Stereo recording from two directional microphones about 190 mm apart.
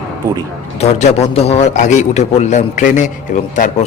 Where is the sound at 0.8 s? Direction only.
35° left (ahead or behind).